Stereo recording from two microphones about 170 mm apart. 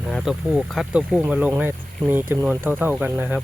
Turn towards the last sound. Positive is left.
turn(degrees=-10)  # may be behind; listen again after turning